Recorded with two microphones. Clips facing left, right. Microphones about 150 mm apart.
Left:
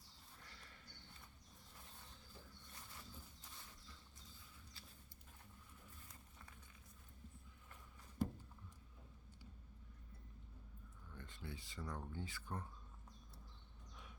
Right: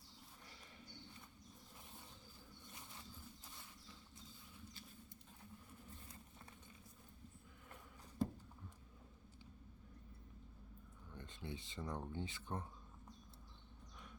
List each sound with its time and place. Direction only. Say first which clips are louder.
0.4 s horse: right 2 dB; 20° right (ahead or behind)
11.1 s speech: right 3 dB; 20° right (ahead or behind)